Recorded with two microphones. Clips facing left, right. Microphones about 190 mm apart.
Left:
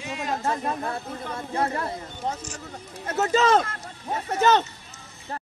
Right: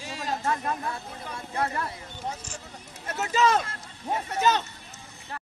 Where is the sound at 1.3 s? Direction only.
40° left (ahead or behind).